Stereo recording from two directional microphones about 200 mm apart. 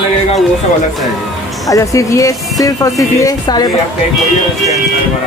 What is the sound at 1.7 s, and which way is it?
Speech, 15° left (ahead or behind).